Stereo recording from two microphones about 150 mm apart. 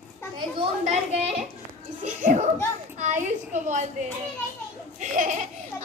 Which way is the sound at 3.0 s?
55° right (ahead or behind).